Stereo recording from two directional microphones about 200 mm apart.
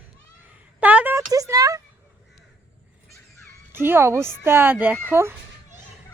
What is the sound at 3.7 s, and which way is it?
Speech, 10° right (ahead or behind).